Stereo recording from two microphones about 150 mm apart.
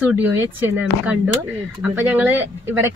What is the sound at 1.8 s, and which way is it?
A woman's voice, 10° right (ahead or behind).